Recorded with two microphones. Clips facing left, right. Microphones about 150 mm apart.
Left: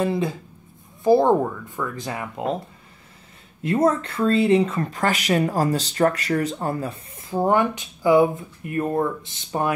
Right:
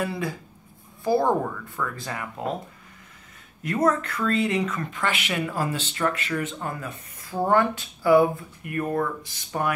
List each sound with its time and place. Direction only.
0.0 s speech: 25° left (ahead or behind)
3.6 s speech: 25° left (ahead or behind)
7.2 s speech: 20° left (ahead or behind)